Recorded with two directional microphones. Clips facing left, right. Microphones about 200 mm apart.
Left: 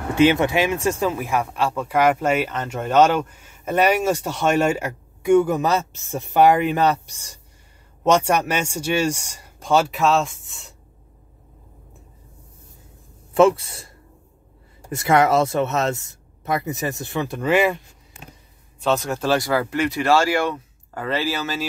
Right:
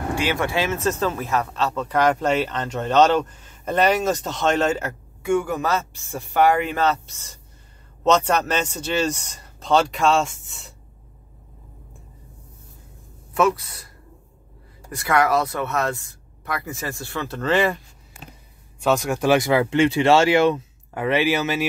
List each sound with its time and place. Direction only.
0.1 s speech: 20° left (ahead or behind); by 10.7 s centre (ahead or behind)
13.3 s a man's voice: 30° left (ahead or behind); by 17.7 s 10° left (ahead or behind)
18.8 s speech: 10° right (ahead or behind)